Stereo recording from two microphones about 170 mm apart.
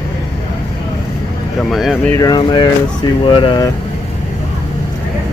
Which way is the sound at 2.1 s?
20° left (ahead or behind).